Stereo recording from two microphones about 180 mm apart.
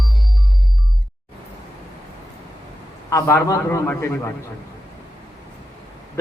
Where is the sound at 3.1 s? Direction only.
15° left (ahead or behind).